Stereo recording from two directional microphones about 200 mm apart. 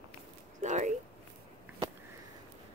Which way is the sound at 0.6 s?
35° right (ahead or behind).